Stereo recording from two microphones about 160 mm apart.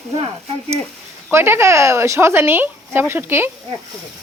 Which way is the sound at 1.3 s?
15° right (ahead or behind).